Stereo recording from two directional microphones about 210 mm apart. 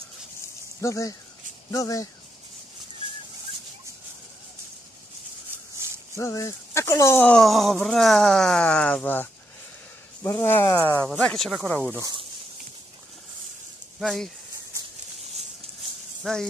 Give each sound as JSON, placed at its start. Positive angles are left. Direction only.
{"t": 0.7, "sound": "speech", "side_deg": 15}
{"t": 6.1, "sound": "speech", "side_deg": 15}
{"t": 11.1, "sound": "speech", "side_deg": 0}
{"t": 12.0, "sound": "speech", "side_deg": -20}
{"t": 13.9, "sound": "speech", "side_deg": 0}
{"t": 16.2, "sound": "speech", "side_deg": 0}